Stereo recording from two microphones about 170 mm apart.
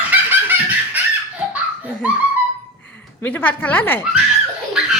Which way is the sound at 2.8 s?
10° left (ahead or behind).